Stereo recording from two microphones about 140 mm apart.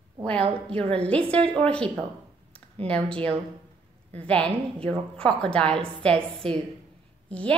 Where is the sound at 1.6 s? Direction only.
5° left (ahead or behind).